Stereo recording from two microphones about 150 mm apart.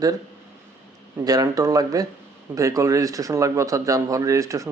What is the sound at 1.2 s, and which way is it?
Speech, 25° right (ahead or behind).